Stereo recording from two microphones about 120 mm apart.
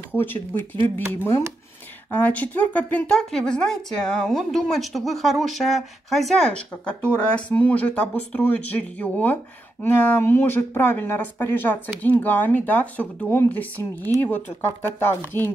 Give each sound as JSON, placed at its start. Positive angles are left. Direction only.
{"t": 0.1, "sound": "speech", "side_deg": 15}
{"t": 2.0, "sound": "a woman's voice", "side_deg": 10}